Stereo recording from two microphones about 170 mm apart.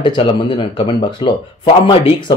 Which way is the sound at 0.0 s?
30° left (ahead or behind).